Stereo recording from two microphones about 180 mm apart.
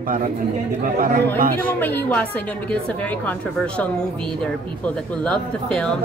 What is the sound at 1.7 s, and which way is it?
A woman's voice, 10° left (ahead or behind).